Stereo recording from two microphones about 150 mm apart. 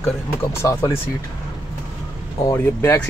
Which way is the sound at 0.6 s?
20° left (ahead or behind).